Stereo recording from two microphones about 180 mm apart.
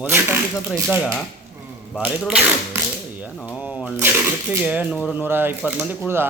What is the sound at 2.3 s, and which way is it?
Cap gun, 5° right (ahead or behind).